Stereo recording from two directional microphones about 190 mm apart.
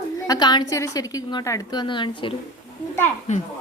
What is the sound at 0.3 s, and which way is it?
A woman's voice, 20° left (ahead or behind).